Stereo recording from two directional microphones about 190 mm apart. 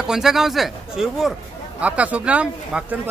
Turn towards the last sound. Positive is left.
turn(degrees=-5)  # may be behind; listen again after turning